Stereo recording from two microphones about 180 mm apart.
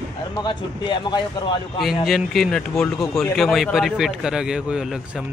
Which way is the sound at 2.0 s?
Centre (ahead or behind).